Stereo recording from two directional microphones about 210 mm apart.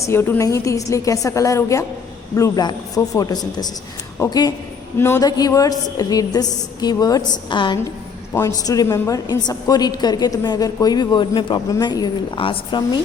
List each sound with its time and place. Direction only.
0.0 s a woman's voice: 10° left (ahead or behind)